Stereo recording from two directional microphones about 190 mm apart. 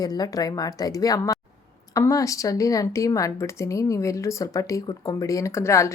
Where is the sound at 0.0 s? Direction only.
20° left (ahead or behind).